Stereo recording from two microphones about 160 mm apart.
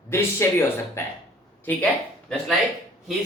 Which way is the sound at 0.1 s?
15° left (ahead or behind).